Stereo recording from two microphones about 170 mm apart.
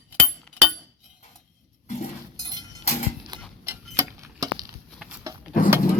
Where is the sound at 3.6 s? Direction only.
15° right (ahead or behind).